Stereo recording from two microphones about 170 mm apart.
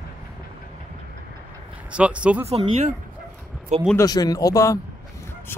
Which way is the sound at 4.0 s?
20° left (ahead or behind).